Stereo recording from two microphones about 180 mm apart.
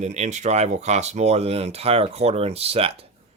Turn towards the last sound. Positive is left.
turn(degrees=-35)  # may be behind; listen again after turning